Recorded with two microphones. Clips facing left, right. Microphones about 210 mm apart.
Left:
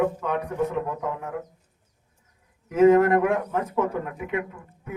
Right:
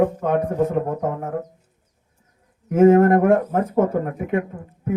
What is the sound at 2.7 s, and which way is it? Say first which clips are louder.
Speech: right 3 dB; 50° right (ahead or behind).